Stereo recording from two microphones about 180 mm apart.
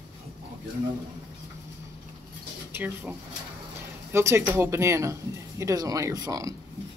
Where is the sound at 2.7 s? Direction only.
10° right (ahead or behind).